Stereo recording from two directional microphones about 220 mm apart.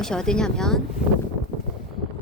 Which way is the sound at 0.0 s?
5° left (ahead or behind).